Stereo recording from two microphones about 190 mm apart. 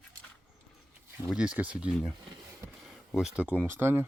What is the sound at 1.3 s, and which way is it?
Speech, 5° right (ahead or behind).